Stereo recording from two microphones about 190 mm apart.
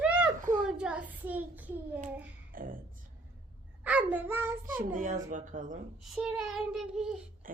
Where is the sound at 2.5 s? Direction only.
50° right (ahead or behind).